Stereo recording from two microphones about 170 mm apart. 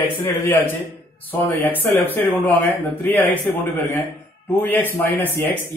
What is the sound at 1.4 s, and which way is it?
Speech, 20° left (ahead or behind).